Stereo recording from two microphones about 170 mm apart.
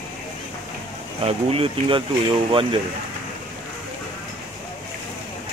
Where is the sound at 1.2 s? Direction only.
35° right (ahead or behind).